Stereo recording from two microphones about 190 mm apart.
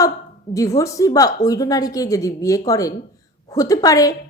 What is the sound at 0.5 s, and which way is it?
A woman's voice, 15° left (ahead or behind).